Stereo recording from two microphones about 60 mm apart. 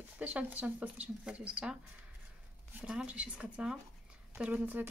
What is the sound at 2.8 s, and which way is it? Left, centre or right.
Speech, centre.